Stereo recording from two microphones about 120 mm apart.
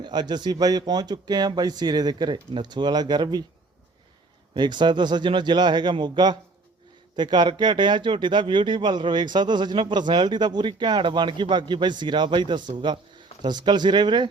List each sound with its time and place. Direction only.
0.0 s speech: 35° right (ahead or behind)
4.5 s speech: 40° right (ahead or behind)